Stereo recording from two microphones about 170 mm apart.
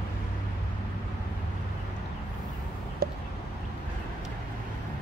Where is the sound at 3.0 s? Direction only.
70° right (ahead or behind).